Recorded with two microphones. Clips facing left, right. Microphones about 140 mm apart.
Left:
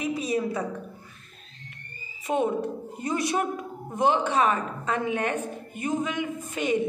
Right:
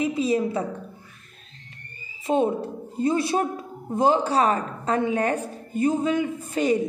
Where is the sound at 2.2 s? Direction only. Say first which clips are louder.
Right 3 dB; 30° right (ahead or behind).